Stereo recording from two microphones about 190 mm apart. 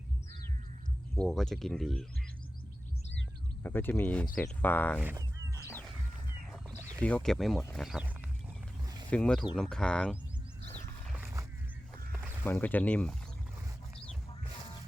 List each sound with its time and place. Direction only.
1.1 s speech: 5° left (ahead or behind)
3.6 s speech: 10° left (ahead or behind)
5.5 s music: 15° left (ahead or behind)
7.0 s speech: 5° left (ahead or behind)
10.6 s wild animals: 35° left (ahead or behind)
11.0 s wild animals: 5° right (ahead or behind)
12.5 s speech: 10° left (ahead or behind)